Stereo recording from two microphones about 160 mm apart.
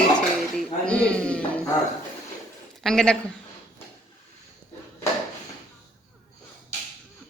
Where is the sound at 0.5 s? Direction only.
5° left (ahead or behind).